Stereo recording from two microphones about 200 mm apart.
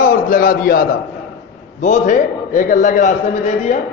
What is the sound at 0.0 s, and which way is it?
A man's voice, 40° left (ahead or behind).